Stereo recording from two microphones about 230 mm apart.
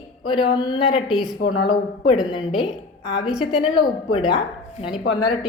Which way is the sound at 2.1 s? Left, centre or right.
Left.